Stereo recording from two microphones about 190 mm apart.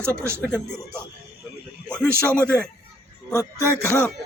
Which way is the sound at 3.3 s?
15° left (ahead or behind).